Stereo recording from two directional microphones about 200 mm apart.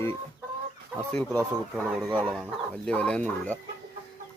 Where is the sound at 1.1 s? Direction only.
5° left (ahead or behind).